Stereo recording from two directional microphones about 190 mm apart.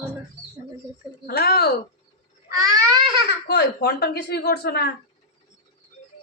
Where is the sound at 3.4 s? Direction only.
55° left (ahead or behind).